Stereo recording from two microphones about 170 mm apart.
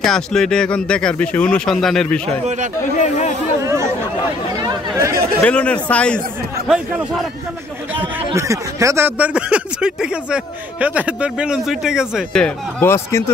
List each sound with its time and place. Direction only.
0.0 s speech: 5° left (ahead or behind)
3.0 s speech: 45° left (ahead or behind)
3.6 s speech: 15° right (ahead or behind)
4.6 s chatter: 15° right (ahead or behind)
5.4 s a man's voice: 5° left (ahead or behind)
8.4 s speech: 20° right (ahead or behind)
12.4 s a man's voice: 15° left (ahead or behind)